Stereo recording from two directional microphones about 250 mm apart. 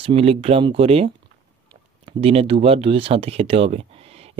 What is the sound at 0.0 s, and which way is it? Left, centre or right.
Speech, right.